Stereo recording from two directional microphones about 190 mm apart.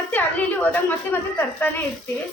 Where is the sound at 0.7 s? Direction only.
10° left (ahead or behind).